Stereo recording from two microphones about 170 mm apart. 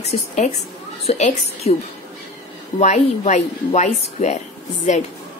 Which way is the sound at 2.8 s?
40° left (ahead or behind).